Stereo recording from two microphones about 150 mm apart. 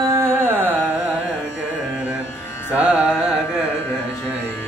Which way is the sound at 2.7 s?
5° right (ahead or behind).